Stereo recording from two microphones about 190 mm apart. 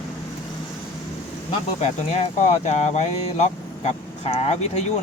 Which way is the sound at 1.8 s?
35° left (ahead or behind).